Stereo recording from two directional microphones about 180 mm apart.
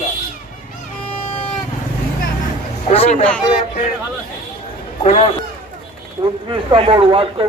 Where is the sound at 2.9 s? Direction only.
35° left (ahead or behind).